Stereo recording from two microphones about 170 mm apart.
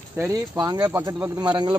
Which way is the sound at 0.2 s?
20° right (ahead or behind).